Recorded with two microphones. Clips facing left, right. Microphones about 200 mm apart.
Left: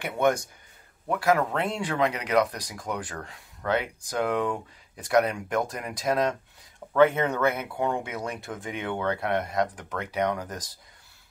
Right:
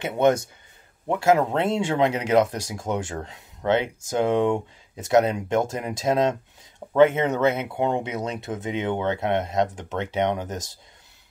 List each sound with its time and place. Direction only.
0.0 s speech: 25° right (ahead or behind)